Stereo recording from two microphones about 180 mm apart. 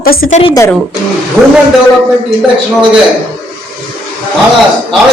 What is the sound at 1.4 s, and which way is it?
Speech, 5° right (ahead or behind).